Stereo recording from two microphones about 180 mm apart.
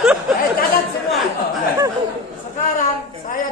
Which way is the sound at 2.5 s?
50° left (ahead or behind).